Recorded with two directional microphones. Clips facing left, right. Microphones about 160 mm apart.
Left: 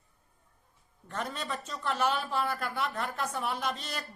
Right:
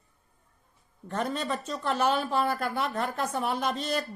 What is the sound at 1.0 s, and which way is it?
Speech, 40° right (ahead or behind).